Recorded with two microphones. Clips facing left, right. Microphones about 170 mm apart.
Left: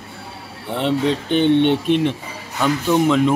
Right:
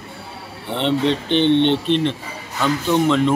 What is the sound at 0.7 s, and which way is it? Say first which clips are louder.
Speech: even; 5° left (ahead or behind).